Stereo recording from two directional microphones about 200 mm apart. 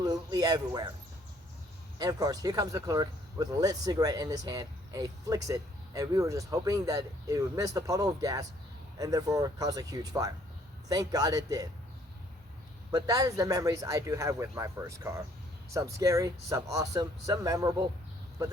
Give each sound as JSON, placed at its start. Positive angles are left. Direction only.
{"t": 0.0, "sound": "speech", "side_deg": -20}
{"t": 2.0, "sound": "speech", "side_deg": -20}
{"t": 12.9, "sound": "speech", "side_deg": -20}